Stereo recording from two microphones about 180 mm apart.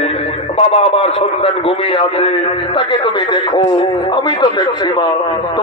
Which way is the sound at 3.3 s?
30° left (ahead or behind).